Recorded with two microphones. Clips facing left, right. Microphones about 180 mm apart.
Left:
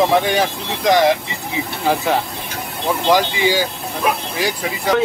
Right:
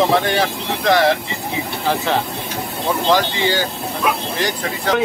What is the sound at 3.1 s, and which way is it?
Speech, 10° left (ahead or behind).